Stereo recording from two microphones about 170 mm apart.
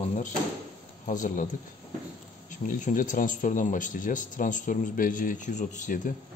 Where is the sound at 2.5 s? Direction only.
50° left (ahead or behind).